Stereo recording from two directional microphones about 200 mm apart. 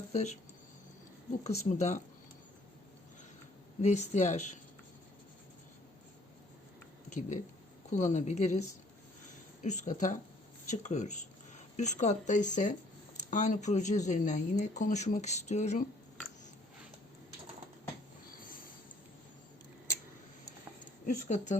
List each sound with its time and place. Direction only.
0.1 s speech: 35° left (ahead or behind)
1.5 s speech: 35° left (ahead or behind)
3.8 s speech: 35° left (ahead or behind)
7.1 s speech: 40° left (ahead or behind)
9.6 s speech: 35° left (ahead or behind)
21.2 s speech: 35° left (ahead or behind)